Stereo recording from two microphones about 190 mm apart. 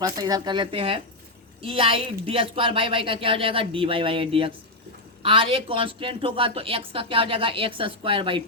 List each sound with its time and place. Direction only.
0.0 s speech: 20° right (ahead or behind)